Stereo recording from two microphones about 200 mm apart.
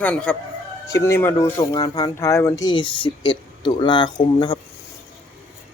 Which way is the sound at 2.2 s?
15° left (ahead or behind).